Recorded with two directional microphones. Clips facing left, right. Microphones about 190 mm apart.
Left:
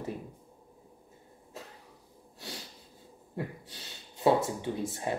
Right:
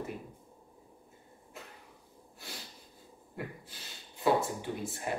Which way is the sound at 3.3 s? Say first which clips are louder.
Left 4 dB; 30° left (ahead or behind).